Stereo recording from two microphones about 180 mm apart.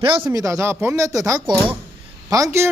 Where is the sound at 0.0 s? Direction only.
25° right (ahead or behind).